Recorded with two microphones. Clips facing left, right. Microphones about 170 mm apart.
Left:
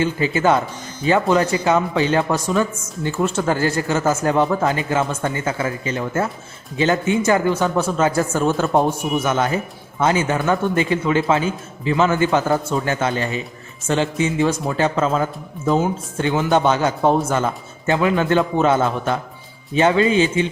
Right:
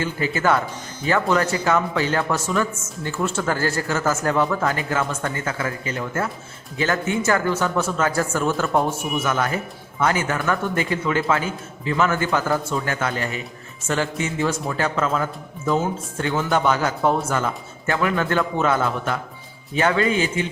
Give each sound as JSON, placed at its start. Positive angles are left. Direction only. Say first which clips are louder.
{"t": 0.0, "sound": "a man's voice", "louder": "left 4 dB", "side_deg": 20}